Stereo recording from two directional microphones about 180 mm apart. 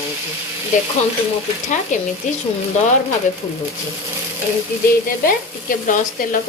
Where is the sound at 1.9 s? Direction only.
40° left (ahead or behind).